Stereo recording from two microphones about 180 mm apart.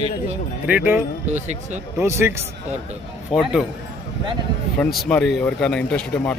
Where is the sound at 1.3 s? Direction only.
40° right (ahead or behind).